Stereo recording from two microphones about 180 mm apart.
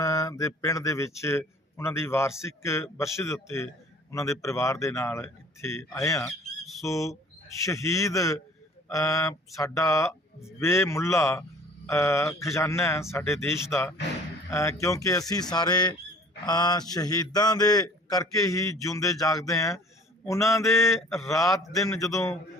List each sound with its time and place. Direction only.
0.0 s a man's voice: 20° left (ahead or behind)